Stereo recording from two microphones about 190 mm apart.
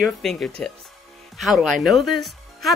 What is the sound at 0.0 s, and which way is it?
Speech, centre (ahead or behind).